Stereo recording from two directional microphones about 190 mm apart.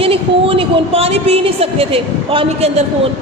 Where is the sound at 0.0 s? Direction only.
30° right (ahead or behind).